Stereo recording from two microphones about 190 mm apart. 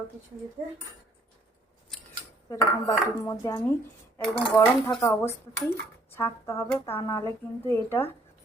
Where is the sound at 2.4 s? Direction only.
20° left (ahead or behind).